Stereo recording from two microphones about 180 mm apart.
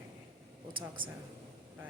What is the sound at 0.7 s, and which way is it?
Speech, 30° right (ahead or behind).